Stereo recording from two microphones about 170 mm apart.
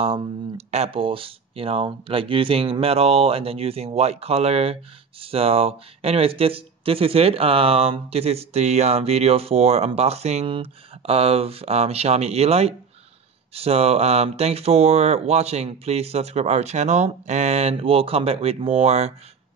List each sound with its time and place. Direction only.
0.0 s speech: 35° right (ahead or behind)